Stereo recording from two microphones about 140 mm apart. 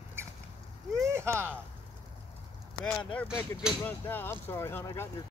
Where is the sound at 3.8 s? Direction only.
15° left (ahead or behind).